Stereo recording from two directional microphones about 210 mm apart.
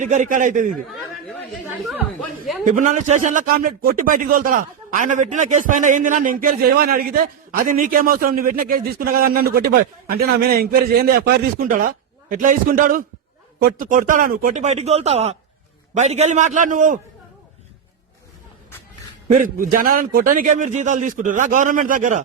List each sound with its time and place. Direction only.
0.0 s speech: 35° right (ahead or behind)
2.6 s speech: 40° right (ahead or behind)
19.3 s speech: 40° right (ahead or behind)